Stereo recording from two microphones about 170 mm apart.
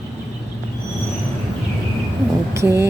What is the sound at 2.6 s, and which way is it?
Speech, 15° right (ahead or behind).